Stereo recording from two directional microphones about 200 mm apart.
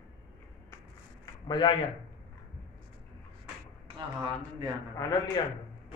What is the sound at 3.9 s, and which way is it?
Speech, 20° right (ahead or behind).